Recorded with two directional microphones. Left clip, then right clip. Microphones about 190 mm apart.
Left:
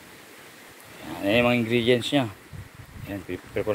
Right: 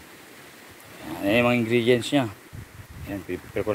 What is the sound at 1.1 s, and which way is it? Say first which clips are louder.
Speech: even; centre (ahead or behind).